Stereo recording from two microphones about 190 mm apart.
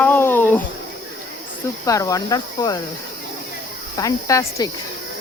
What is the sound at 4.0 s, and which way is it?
Speech, 20° left (ahead or behind).